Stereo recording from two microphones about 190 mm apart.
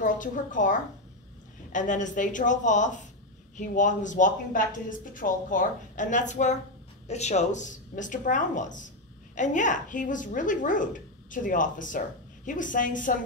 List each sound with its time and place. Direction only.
0.0 s a woman's voice: 45° left (ahead or behind)